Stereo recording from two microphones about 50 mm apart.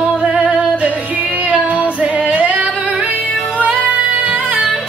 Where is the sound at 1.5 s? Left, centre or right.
Right.